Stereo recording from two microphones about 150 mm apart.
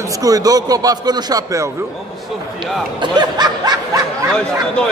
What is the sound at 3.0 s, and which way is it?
Snicker, 30° right (ahead or behind).